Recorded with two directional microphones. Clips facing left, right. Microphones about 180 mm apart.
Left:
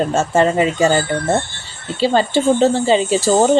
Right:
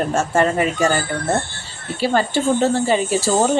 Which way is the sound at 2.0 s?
20° left (ahead or behind).